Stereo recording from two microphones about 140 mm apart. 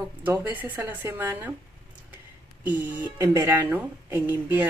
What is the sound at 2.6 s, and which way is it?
A woman's voice, 10° right (ahead or behind).